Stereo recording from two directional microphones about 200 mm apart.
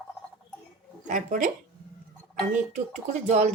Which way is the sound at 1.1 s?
40° right (ahead or behind).